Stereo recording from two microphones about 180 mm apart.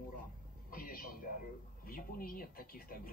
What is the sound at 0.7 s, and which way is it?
Speech, 55° left (ahead or behind).